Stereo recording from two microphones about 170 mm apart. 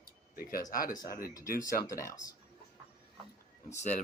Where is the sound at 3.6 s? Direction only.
45° left (ahead or behind).